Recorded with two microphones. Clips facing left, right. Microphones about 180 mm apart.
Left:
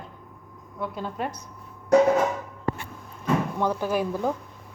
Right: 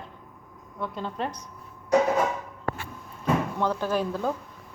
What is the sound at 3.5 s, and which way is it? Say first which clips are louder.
Speech: left 1 dB; 15° left (ahead or behind).